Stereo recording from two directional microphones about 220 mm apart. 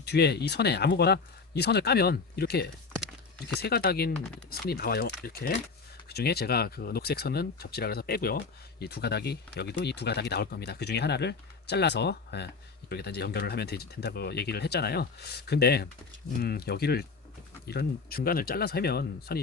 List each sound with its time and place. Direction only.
0.0 s speech: 50° left (ahead or behind)